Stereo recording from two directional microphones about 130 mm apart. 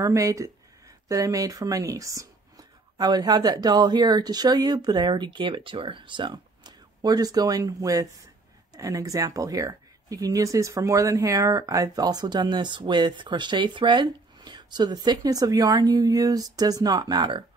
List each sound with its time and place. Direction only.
0.0 s speech: 25° right (ahead or behind)